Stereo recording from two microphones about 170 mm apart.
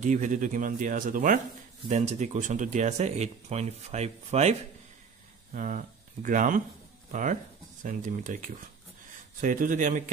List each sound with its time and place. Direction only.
0.0 s speech: 50° right (ahead or behind)